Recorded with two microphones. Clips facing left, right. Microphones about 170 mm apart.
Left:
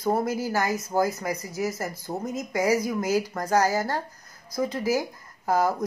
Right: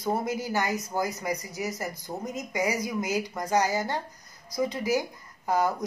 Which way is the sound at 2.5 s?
40° left (ahead or behind).